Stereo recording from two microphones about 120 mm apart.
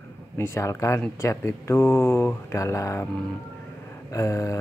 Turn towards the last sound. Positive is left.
turn(degrees=25)  # may be behind; listen again after turning